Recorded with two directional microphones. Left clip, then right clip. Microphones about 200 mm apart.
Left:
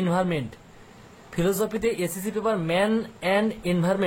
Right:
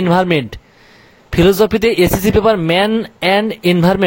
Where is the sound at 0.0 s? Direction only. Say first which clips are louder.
Right 12 dB; 45° right (ahead or behind).